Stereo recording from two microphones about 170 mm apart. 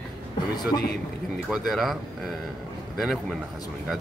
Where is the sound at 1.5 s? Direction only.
Centre (ahead or behind).